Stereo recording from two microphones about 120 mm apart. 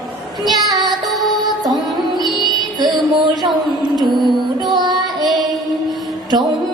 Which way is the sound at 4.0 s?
Centre (ahead or behind).